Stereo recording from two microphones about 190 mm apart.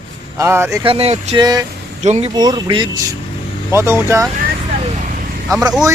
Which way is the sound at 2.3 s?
20° right (ahead or behind).